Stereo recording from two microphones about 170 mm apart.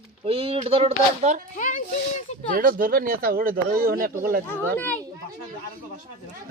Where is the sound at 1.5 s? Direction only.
50° left (ahead or behind).